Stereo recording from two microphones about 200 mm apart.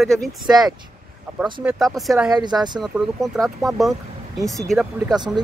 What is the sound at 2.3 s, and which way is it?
Speech, 20° right (ahead or behind).